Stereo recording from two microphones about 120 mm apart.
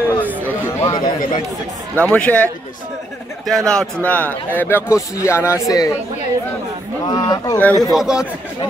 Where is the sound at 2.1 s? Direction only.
10° left (ahead or behind); by 5.9 s 30° left (ahead or behind).